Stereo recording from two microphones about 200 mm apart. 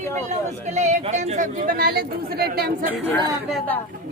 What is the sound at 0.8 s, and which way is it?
Speech, 35° right (ahead or behind).